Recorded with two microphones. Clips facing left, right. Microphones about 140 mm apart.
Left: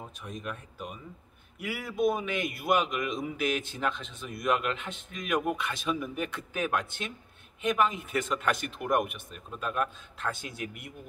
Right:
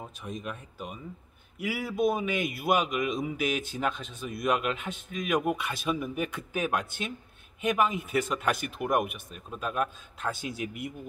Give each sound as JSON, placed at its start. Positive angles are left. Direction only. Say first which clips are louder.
{"t": 0.0, "sound": "a man's voice", "louder": "right 2 dB", "side_deg": 0}
{"t": 10.5, "sound": "speech", "louder": "right 3 dB", "side_deg": 50}